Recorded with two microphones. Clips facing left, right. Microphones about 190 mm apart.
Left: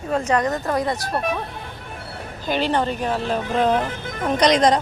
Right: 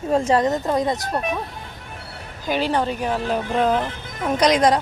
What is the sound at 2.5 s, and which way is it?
Speech, 10° right (ahead or behind).